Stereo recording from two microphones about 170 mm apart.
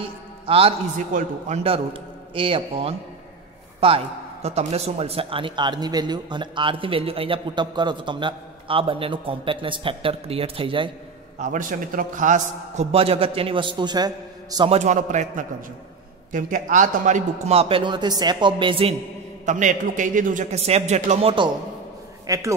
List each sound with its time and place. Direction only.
0.5 s speech: 35° right (ahead or behind)
0.9 s a man's voice: 50° right (ahead or behind)
2.3 s speech: 30° right (ahead or behind)
11.3 s a man's voice: 50° right (ahead or behind)
12.9 s a man's voice: 35° right (ahead or behind)
14.7 s a man's voice: 45° right (ahead or behind)
19.4 s a man's voice: 45° right (ahead or behind)
22.2 s a man's voice: 20° right (ahead or behind)